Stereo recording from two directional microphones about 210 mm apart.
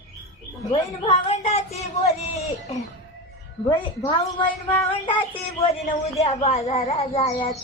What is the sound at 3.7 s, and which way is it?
Speech, 20° left (ahead or behind).